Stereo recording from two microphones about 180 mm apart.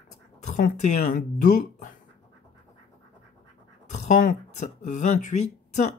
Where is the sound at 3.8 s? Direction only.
40° left (ahead or behind).